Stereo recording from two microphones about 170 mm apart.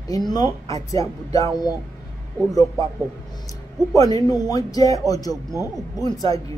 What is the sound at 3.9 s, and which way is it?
Speech, 20° left (ahead or behind).